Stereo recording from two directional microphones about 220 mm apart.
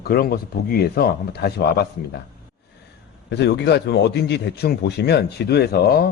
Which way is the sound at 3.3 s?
50° left (ahead or behind).